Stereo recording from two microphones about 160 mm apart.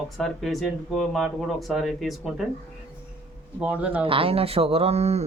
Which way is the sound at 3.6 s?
10° right (ahead or behind).